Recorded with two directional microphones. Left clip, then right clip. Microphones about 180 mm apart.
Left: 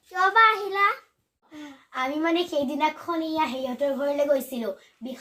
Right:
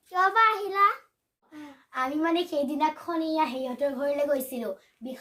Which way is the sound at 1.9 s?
25° right (ahead or behind).